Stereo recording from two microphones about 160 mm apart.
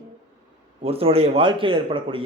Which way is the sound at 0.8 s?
35° right (ahead or behind).